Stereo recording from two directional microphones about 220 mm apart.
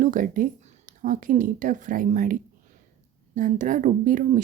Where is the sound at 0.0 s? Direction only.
35° right (ahead or behind).